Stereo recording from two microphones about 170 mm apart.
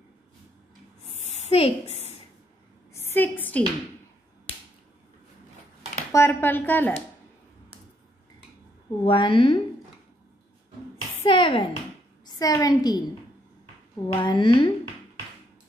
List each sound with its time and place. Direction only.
1.1 s a sound: 40° left (ahead or behind)
2.9 s a sound: 15° left (ahead or behind)
4.5 s finger snapping: 35° left (ahead or behind)
6.1 s speech: 15° left (ahead or behind)
9.0 s a woman's voice: 30° left (ahead or behind)
11.2 s speech: 30° left (ahead or behind)
14.0 s speech: 25° left (ahead or behind)